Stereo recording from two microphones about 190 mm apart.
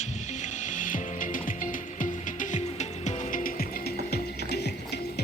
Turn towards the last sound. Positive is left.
turn(degrees=60)  # may be behind; listen again after turning